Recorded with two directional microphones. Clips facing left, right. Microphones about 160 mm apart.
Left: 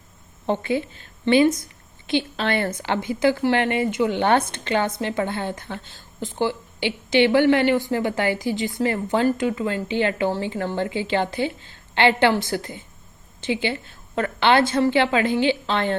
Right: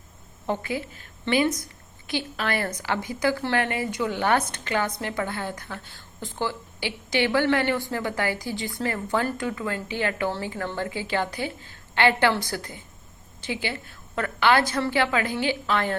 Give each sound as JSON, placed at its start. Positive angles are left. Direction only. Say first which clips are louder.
{"t": 0.4, "sound": "a woman's voice", "louder": "left 5 dB", "side_deg": 25}